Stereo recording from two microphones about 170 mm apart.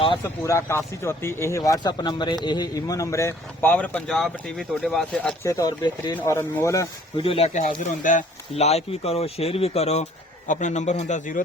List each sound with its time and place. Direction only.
0.4 s speech: 15° left (ahead or behind)
5.5 s speech: 20° left (ahead or behind)
6.1 s speech: 15° left (ahead or behind)
7.2 s speech: 35° left (ahead or behind)
7.8 s a man's voice: 50° left (ahead or behind)